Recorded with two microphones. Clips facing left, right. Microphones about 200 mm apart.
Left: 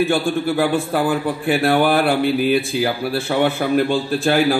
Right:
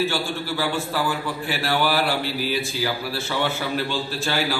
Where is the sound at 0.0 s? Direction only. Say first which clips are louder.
Left 7 dB; 55° left (ahead or behind).